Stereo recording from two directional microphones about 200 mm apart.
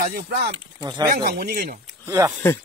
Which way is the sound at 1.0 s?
55° right (ahead or behind).